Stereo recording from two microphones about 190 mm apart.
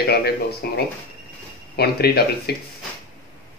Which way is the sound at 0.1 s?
55° left (ahead or behind).